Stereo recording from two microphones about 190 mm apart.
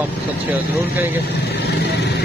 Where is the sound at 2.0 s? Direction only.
55° left (ahead or behind).